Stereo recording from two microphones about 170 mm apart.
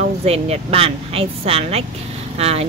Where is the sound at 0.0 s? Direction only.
40° right (ahead or behind).